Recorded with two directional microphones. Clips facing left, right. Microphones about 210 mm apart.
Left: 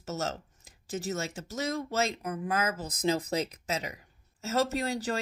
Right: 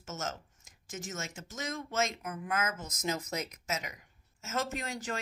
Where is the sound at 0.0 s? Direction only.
35° left (ahead or behind).